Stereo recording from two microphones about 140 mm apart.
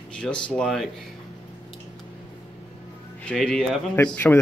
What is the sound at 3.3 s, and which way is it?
Speech, 5° left (ahead or behind).